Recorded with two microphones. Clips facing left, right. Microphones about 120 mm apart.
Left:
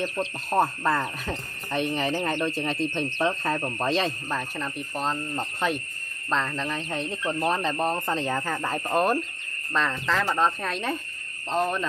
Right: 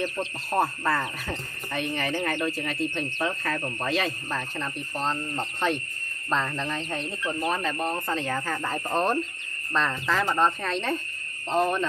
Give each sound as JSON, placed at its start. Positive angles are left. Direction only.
{"t": 0.5, "sound": "speech", "side_deg": 20}
{"t": 4.6, "sound": "speech", "side_deg": 5}
{"t": 6.9, "sound": "speech", "side_deg": 20}
{"t": 9.8, "sound": "speech", "side_deg": 0}